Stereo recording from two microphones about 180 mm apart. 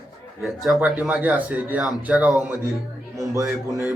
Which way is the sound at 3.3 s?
20° right (ahead or behind).